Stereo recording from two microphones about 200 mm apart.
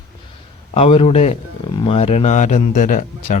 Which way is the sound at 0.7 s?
30° left (ahead or behind).